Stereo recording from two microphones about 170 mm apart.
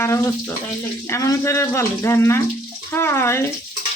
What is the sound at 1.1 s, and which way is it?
Speech, 15° left (ahead or behind).